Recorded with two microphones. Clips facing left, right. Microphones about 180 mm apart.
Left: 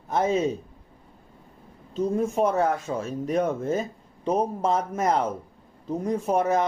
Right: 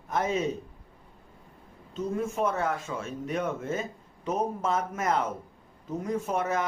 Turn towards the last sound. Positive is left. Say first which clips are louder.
# left 6 dB
turn(degrees=35)  # may be behind; listen again after turning